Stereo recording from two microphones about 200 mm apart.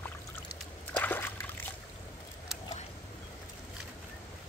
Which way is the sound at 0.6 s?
10° left (ahead or behind).